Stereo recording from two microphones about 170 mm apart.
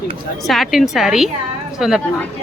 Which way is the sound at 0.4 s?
Centre (ahead or behind).